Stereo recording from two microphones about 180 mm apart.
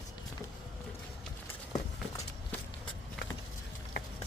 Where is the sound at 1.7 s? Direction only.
15° left (ahead or behind).